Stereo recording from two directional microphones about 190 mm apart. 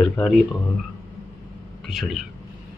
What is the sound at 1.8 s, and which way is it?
Speech, centre (ahead or behind).